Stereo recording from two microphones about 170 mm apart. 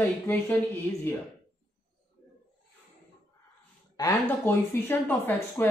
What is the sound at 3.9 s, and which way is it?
Speech, 15° left (ahead or behind).